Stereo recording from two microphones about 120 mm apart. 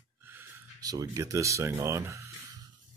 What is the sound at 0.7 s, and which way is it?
Speech, 30° right (ahead or behind).